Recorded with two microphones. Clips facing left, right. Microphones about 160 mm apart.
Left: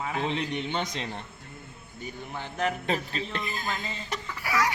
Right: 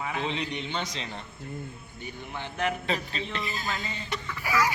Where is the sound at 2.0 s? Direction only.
40° left (ahead or behind).